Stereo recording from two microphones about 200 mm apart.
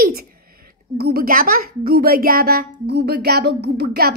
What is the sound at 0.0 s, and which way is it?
A child's voice, 50° right (ahead or behind).